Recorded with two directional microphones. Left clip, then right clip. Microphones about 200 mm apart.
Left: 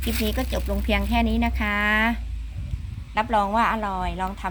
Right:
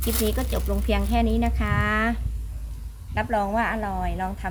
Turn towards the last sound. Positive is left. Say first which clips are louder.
# left 1 dB
turn(degrees=10)  # may be behind; listen again after turning